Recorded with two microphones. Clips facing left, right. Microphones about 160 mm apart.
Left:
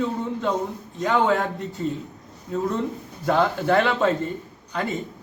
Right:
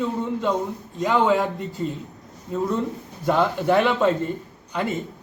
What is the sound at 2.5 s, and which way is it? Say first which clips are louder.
A man's voice: right 1 dB; 5° right (ahead or behind).